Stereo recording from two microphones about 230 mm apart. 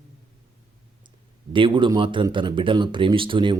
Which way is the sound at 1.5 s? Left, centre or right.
Right.